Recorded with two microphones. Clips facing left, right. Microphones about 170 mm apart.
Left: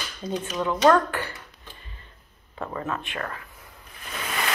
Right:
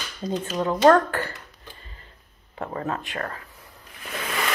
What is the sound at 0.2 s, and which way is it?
Speech, 40° right (ahead or behind).